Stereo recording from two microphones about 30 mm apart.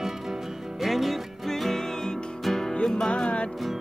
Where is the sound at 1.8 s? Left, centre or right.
Centre.